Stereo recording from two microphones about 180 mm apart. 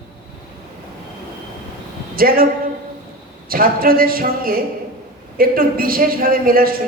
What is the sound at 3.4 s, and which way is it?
Speech, 55° right (ahead or behind).